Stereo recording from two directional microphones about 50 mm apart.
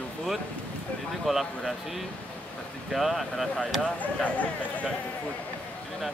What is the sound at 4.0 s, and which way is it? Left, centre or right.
Speech, left.